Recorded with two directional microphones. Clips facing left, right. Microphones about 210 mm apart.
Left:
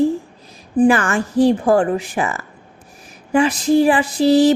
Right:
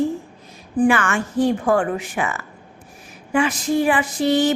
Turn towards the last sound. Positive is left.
turn(degrees=35)  # may be behind; listen again after turning